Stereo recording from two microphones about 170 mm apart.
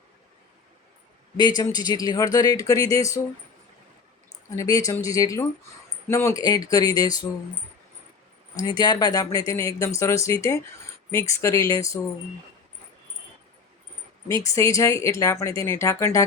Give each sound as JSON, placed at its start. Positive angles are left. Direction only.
{"t": 1.4, "sound": "speech", "side_deg": 25}
{"t": 4.4, "sound": "speech", "side_deg": 20}
{"t": 8.5, "sound": "speech", "side_deg": 25}
{"t": 14.4, "sound": "speech", "side_deg": 20}